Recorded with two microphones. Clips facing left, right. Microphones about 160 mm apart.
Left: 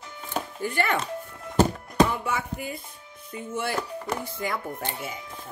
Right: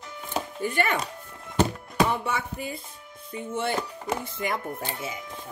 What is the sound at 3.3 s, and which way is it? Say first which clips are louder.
Speech: right 1 dB; 25° right (ahead or behind).